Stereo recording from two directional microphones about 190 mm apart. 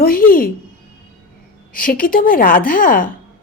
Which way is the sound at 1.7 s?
50° left (ahead or behind).